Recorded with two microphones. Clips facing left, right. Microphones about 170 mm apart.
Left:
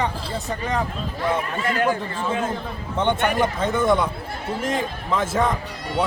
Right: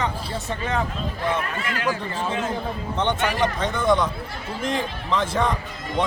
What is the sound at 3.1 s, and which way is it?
Speech, 55° left (ahead or behind).